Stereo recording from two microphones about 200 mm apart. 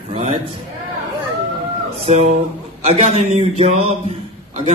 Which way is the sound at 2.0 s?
35° right (ahead or behind).